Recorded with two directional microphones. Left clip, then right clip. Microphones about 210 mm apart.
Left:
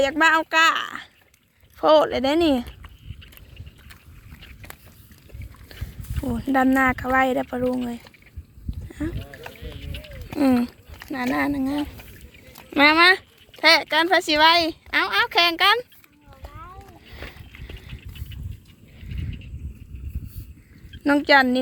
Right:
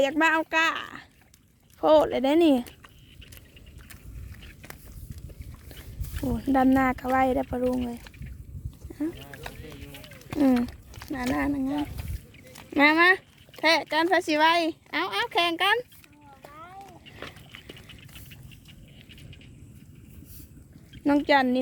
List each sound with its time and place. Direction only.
0.0 s speech: 10° right (ahead or behind)
4.4 s biting: 50° right (ahead or behind)
6.2 s speech: 10° right (ahead or behind)
8.9 s rowboat: 10° right (ahead or behind)
9.6 s music: 55° right (ahead or behind)
10.2 s speech: centre (ahead or behind)
12.7 s speech: 5° right (ahead or behind)
17.1 s a sound: 5° right (ahead or behind)
21.0 s speech: centre (ahead or behind)